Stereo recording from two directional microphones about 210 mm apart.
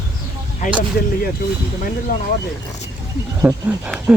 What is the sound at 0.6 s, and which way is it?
Speech, 35° left (ahead or behind).